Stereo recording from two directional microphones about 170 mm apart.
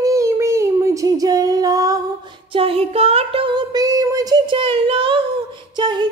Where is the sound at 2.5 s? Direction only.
35° right (ahead or behind).